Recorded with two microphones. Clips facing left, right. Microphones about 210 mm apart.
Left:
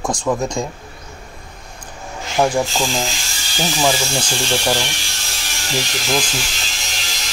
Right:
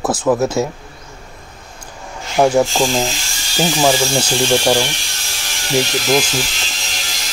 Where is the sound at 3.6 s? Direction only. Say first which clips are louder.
Right 4 dB; 15° right (ahead or behind).